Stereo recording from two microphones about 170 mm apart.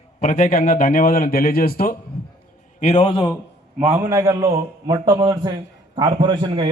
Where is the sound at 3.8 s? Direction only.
15° right (ahead or behind).